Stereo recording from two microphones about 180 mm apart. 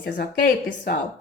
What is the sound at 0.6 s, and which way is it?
Speech, 70° left (ahead or behind).